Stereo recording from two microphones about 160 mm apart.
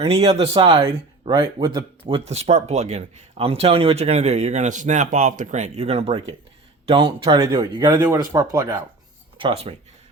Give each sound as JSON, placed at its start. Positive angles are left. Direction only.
{"t": 0.0, "sound": "speech", "side_deg": -40}
{"t": 2.1, "sound": "speech", "side_deg": -40}
{"t": 9.4, "sound": "speech", "side_deg": -35}